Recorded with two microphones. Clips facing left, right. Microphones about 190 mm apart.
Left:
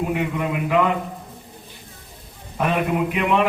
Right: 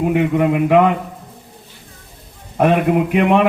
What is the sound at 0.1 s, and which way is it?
Speech, 50° right (ahead or behind).